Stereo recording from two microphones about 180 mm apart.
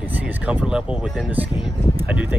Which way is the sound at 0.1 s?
10° right (ahead or behind).